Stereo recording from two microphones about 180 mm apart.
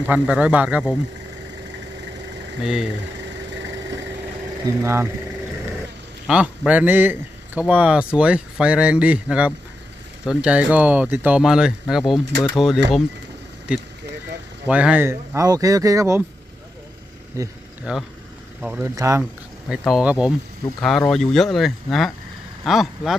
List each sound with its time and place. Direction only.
0.0 s a man's voice: 5° right (ahead or behind)
2.6 s speech: 5° right (ahead or behind)
4.6 s a man's voice: 15° right (ahead or behind)
6.2 s a man's voice: 5° right (ahead or behind)
14.7 s a man's voice: 5° right (ahead or behind)
17.4 s a man's voice: 15° right (ahead or behind)
17.9 s speech: 5° right (ahead or behind)
18.9 s a man's voice: 15° right (ahead or behind)
19.8 s speech: 5° right (ahead or behind)